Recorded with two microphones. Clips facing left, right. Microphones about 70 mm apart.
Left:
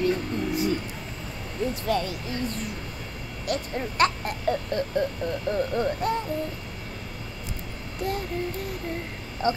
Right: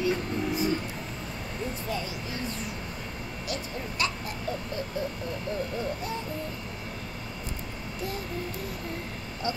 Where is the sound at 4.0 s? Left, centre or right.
Left.